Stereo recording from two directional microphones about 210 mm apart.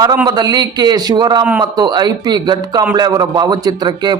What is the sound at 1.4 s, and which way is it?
Speech, 10° right (ahead or behind).